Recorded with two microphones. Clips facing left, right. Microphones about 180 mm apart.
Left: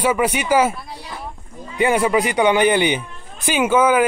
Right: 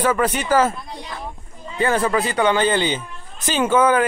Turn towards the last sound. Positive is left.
turn(degrees=10)  # may be behind; listen again after turning